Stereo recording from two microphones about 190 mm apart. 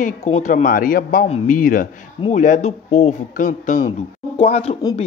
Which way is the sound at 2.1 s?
35° left (ahead or behind).